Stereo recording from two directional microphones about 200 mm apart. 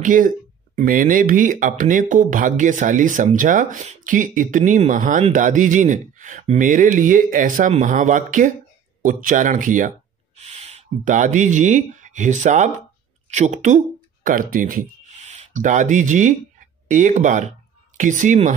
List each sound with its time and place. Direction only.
0.0 s speech: 40° right (ahead or behind)